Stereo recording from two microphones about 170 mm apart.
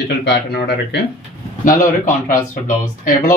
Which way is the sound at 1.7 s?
55° left (ahead or behind).